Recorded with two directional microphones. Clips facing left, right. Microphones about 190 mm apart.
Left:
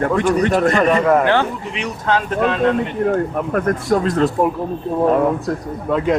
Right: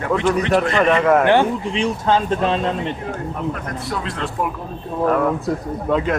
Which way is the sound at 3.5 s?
50° left (ahead or behind).